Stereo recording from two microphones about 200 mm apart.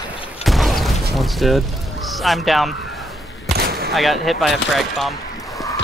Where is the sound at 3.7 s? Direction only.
50° right (ahead or behind).